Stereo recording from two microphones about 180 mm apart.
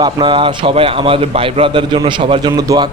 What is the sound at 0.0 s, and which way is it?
A man's voice, 25° right (ahead or behind).